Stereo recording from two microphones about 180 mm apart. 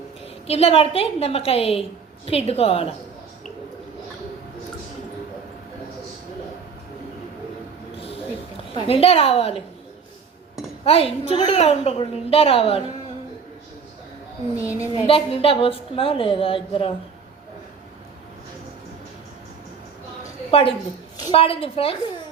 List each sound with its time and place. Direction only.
0.4 s a woman's voice: 35° left (ahead or behind)
7.9 s a sound: 30° left (ahead or behind)
8.7 s a woman's voice: 30° left (ahead or behind)
10.8 s a woman's voice: 35° left (ahead or behind)
15.0 s a woman's voice: 30° left (ahead or behind)
20.5 s a woman's voice: 30° left (ahead or behind)